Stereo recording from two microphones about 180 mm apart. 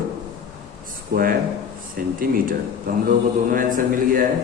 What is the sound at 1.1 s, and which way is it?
A man's voice, 55° right (ahead or behind).